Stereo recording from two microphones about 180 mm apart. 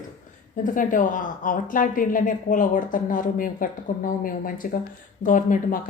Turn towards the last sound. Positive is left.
turn(degrees=50)  # may be behind; listen again after turning